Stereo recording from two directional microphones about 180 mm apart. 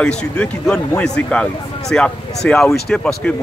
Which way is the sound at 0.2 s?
5° left (ahead or behind).